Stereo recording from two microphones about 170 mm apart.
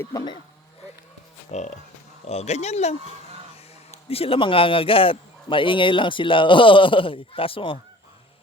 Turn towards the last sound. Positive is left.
turn(degrees=30)  # may be behind; listen again after turning